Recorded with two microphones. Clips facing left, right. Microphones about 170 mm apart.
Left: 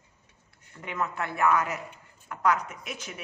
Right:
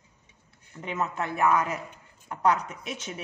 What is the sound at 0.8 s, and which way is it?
Speech, 20° right (ahead or behind).